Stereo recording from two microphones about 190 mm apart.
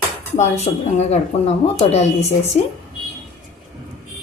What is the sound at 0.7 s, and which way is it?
Speech, 30° left (ahead or behind).